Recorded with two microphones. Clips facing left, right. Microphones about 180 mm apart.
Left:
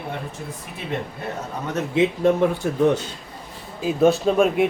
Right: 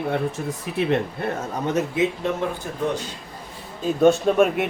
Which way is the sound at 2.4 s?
70° left (ahead or behind).